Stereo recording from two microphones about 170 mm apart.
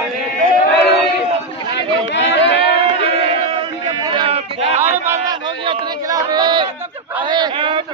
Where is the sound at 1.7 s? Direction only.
90° left.